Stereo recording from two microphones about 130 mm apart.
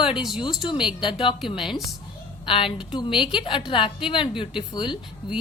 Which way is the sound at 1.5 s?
5° right (ahead or behind).